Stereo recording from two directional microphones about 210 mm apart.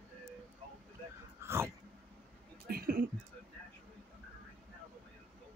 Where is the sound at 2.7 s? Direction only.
45° right (ahead or behind).